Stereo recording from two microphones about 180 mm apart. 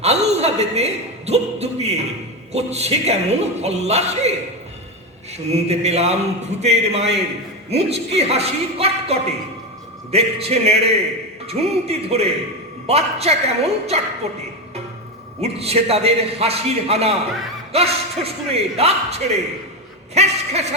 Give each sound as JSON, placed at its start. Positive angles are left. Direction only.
{"t": 0.0, "sound": "a man's voice", "side_deg": -35}
{"t": 5.5, "sound": "a man's voice", "side_deg": -35}
{"t": 20.1, "sound": "a sound", "side_deg": -35}